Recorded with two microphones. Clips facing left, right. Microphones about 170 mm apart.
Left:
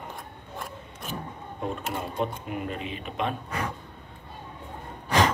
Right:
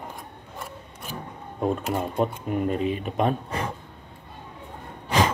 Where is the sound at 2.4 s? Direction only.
40° right (ahead or behind).